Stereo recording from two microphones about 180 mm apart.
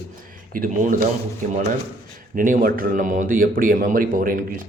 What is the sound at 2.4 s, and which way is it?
Speech, 50° right (ahead or behind).